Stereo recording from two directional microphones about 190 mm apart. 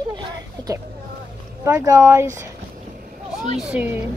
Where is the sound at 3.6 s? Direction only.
5° right (ahead or behind).